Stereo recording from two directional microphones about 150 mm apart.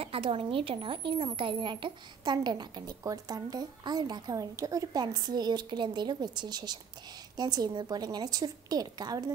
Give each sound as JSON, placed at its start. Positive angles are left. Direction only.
{"t": 0.0, "sound": "speech", "side_deg": -40}